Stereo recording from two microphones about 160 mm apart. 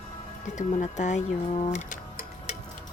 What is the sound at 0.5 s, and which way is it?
Speech, 50° left (ahead or behind).